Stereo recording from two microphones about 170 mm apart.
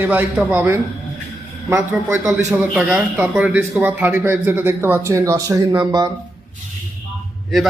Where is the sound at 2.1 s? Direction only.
15° right (ahead or behind).